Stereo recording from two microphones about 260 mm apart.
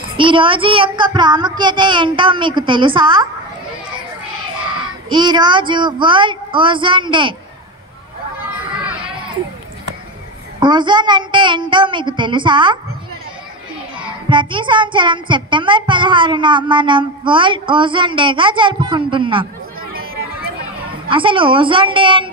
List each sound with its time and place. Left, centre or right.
0.2 s a child's voice: centre
5.1 s a child's voice: centre
10.6 s a woman's voice: centre
13.9 s a child's voice: centre
21.1 s a child's voice: centre